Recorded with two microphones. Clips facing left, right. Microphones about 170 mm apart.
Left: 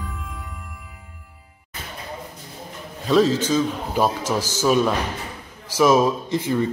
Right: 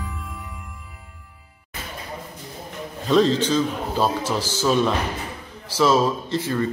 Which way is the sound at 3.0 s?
5° left (ahead or behind).